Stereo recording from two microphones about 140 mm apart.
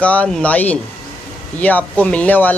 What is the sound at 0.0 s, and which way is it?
Speech, 10° left (ahead or behind).